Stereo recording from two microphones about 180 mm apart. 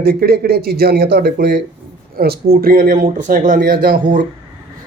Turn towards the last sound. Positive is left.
turn(degrees=-50)  # may be behind; listen again after turning